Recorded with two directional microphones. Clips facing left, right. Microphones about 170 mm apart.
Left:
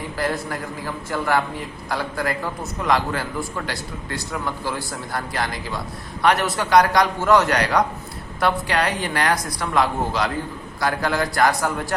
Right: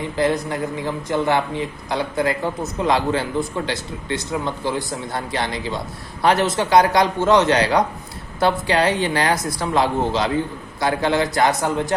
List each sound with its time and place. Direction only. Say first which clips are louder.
0.2 s speech: right 5 dB; 20° right (ahead or behind)